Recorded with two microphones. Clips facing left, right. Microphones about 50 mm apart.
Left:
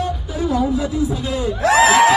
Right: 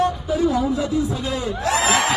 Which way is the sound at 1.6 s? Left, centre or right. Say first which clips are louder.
Left 8 dB; left.